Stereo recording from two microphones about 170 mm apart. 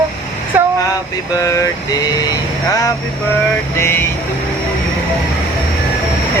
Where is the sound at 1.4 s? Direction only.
20° left (ahead or behind).